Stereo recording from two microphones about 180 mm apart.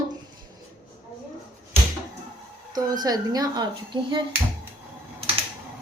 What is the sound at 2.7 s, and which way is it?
A woman's voice, 20° right (ahead or behind).